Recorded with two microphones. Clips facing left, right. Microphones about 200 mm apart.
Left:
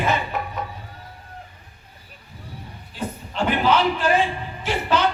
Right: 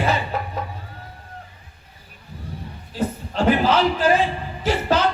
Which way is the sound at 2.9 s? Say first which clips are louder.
Right 4 dB; 40° right (ahead or behind).